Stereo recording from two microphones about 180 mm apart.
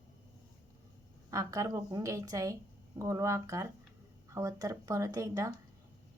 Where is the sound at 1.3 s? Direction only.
20° right (ahead or behind).